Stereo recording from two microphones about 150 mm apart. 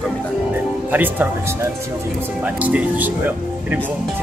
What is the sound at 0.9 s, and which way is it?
Speech, 10° right (ahead or behind).